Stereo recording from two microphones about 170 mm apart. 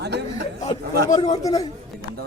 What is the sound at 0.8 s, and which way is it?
Speech, 70° right (ahead or behind).